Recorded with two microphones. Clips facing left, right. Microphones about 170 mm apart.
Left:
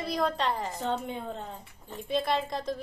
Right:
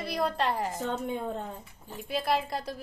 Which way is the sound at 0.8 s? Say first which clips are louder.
Right 1 dB; 50° right (ahead or behind).